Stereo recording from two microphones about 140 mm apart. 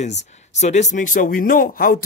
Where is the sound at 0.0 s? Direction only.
55° left (ahead or behind).